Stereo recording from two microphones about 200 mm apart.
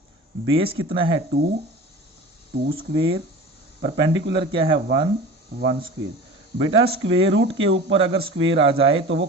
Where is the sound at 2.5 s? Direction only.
50° right (ahead or behind).